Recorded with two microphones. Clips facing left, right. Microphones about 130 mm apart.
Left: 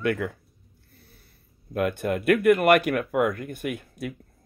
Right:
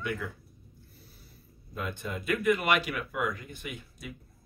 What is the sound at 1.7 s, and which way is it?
Speech, 65° left (ahead or behind).